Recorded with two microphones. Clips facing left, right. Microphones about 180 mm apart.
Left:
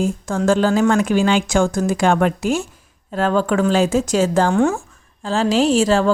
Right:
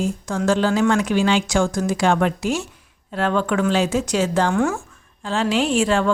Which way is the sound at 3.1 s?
40° left (ahead or behind).